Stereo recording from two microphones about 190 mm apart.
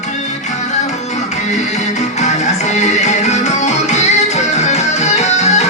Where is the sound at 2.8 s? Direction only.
35° left (ahead or behind).